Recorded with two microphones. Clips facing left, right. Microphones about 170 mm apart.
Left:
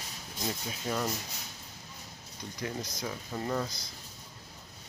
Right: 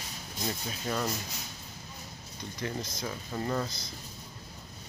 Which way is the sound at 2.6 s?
10° left (ahead or behind).